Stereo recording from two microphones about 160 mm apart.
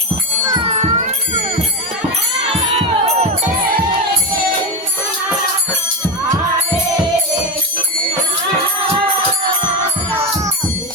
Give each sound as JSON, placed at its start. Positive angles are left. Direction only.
{"t": 0.6, "sound": "music", "side_deg": -45}
{"t": 2.7, "sound": "music", "side_deg": -45}